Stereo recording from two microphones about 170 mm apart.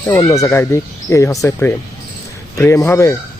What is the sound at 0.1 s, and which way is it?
Speech, 20° left (ahead or behind).